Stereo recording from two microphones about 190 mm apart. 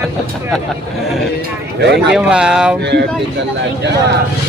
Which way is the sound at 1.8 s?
65° right (ahead or behind).